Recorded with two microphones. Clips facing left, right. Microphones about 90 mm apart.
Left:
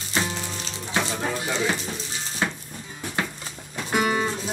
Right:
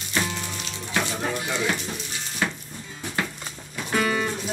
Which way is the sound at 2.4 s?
25° left (ahead or behind).